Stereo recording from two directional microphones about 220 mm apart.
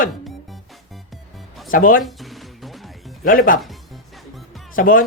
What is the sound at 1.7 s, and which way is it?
Speech, 40° left (ahead or behind).